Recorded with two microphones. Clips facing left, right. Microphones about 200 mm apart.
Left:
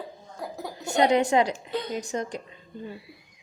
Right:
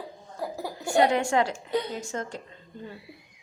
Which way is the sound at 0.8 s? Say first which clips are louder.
Left 1 dB; 20° left (ahead or behind).